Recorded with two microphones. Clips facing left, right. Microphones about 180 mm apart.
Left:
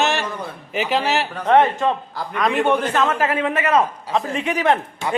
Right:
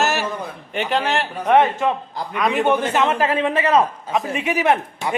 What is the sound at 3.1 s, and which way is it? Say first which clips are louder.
Speech: right 1 dB; 30° right (ahead or behind).